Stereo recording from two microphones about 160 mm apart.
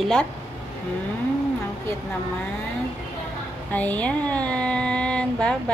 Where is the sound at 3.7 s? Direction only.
10° left (ahead or behind).